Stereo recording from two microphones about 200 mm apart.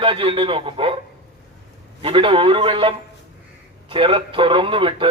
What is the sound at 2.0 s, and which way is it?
A man's voice, 25° right (ahead or behind).